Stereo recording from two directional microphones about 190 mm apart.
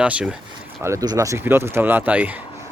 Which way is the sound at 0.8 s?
15° right (ahead or behind).